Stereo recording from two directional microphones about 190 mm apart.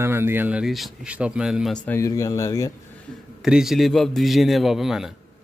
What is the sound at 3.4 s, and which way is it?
Speech, 5° right (ahead or behind).